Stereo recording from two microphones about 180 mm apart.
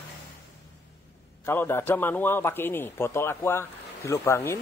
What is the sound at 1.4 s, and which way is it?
A man's voice, 15° left (ahead or behind).